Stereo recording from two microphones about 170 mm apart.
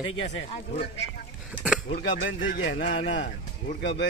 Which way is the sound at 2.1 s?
80° left.